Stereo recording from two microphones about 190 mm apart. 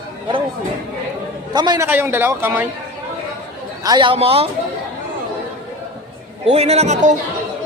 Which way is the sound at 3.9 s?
25° right (ahead or behind).